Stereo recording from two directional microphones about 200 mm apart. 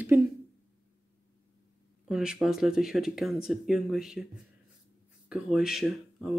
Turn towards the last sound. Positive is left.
turn(degrees=0)  # may be behind; listen again after turning